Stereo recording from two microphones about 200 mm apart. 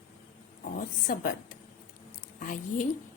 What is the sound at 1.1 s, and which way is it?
Speech, 45° left (ahead or behind).